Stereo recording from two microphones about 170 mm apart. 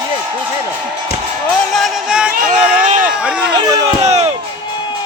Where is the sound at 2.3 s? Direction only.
55° right (ahead or behind).